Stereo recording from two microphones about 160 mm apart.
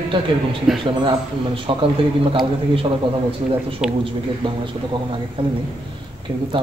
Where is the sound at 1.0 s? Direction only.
35° right (ahead or behind).